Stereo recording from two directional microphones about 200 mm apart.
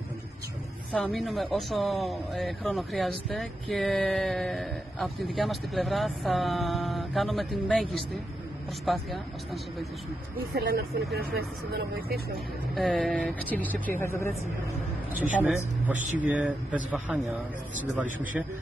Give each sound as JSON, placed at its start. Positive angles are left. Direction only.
{"t": 0.9, "sound": "speech", "side_deg": 0}
{"t": 10.3, "sound": "speech", "side_deg": -50}
{"t": 12.7, "sound": "speech", "side_deg": 0}
{"t": 15.4, "sound": "speech", "side_deg": -10}